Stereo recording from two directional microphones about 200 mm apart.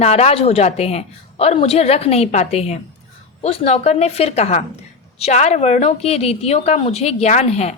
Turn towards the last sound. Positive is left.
turn(degrees=30)  # may be behind; listen again after turning